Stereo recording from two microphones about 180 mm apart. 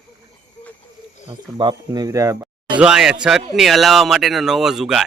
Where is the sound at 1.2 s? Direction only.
25° right (ahead or behind).